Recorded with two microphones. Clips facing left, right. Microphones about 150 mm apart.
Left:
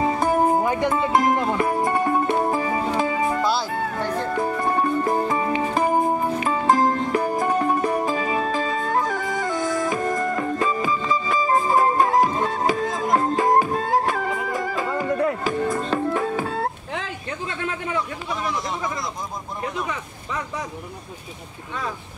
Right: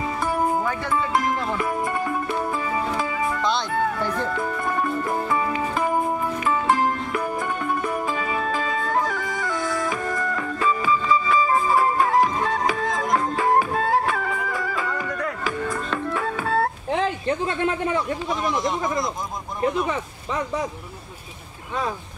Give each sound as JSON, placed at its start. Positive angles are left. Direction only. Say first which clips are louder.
{"t": 0.0, "sound": "music", "louder": "left 4 dB", "side_deg": 45}
{"t": 0.7, "sound": "speech", "louder": "left 3 dB", "side_deg": 20}
{"t": 1.4, "sound": "music", "louder": "left 3 dB", "side_deg": 35}
{"t": 14.5, "sound": "music", "louder": "left 2 dB", "side_deg": 40}
{"t": 16.9, "sound": "a sound", "louder": "right 8 dB", "side_deg": -35}